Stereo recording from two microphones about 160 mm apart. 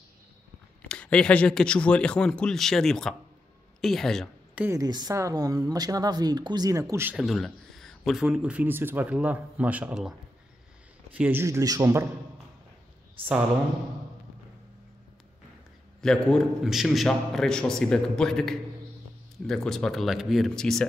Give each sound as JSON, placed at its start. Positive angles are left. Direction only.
{"t": 0.8, "sound": "a man's voice", "side_deg": 5}
{"t": 4.6, "sound": "a man's voice", "side_deg": -15}
{"t": 4.8, "sound": "speech", "side_deg": -25}
{"t": 7.2, "sound": "a man's voice", "side_deg": 0}
{"t": 11.1, "sound": "a man's voice", "side_deg": -10}
{"t": 16.0, "sound": "a man's voice", "side_deg": 5}